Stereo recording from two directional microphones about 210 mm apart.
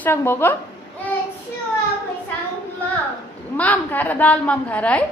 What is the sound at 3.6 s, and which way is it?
A woman's voice, 10° left (ahead or behind).